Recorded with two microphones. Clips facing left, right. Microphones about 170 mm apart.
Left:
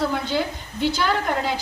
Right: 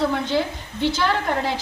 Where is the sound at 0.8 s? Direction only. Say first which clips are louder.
Right 1 dB; centre (ahead or behind).